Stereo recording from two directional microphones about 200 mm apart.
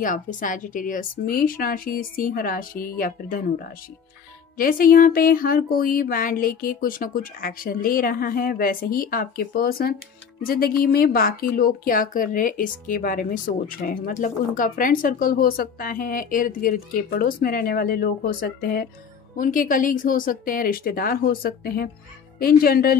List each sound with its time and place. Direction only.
0.0 s speech: 40° left (ahead or behind)